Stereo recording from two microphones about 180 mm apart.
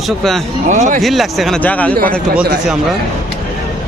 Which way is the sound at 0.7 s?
45° right (ahead or behind).